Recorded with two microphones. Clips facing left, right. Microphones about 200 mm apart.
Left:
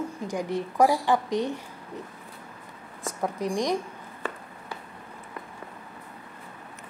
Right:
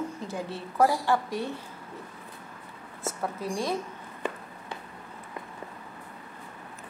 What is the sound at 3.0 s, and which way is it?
Speech, 15° left (ahead or behind).